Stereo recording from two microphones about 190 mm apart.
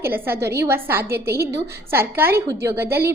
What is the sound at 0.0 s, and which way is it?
A woman's voice, 10° right (ahead or behind).